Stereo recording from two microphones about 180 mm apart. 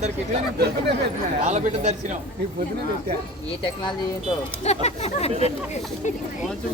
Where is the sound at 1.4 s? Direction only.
40° right (ahead or behind).